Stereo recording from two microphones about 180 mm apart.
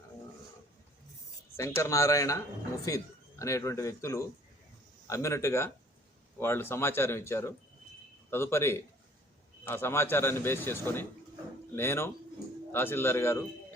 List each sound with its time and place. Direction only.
1.5 s speech: 15° left (ahead or behind)